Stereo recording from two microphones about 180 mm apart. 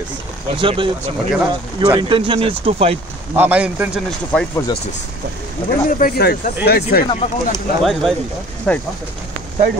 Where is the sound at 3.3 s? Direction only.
10° right (ahead or behind).